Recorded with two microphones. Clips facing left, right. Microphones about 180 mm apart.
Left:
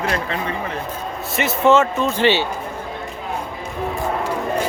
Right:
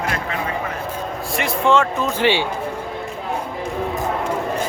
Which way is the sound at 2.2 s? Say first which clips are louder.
Left 1 dB; 10° right (ahead or behind).